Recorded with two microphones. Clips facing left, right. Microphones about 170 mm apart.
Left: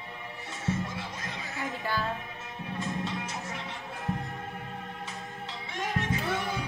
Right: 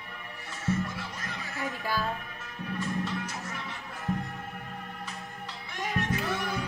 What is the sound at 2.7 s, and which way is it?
Music, 25° left (ahead or behind).